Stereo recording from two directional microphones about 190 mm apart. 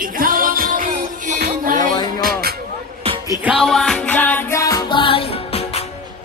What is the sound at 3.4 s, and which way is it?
Music, centre (ahead or behind).